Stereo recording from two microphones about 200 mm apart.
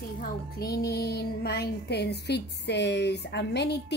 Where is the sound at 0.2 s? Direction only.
50° left (ahead or behind).